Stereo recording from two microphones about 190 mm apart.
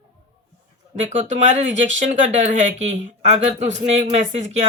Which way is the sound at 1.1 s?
40° right (ahead or behind).